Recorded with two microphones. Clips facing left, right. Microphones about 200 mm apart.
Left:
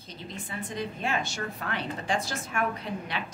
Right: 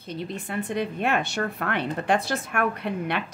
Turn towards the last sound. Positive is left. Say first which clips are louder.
# right 6 dB
turn(degrees=-60)  # may be behind; listen again after turning